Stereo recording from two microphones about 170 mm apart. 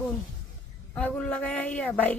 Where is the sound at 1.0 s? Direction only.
5° left (ahead or behind).